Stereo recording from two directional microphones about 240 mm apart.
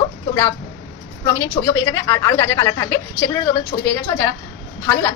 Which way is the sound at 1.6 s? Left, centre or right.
Left.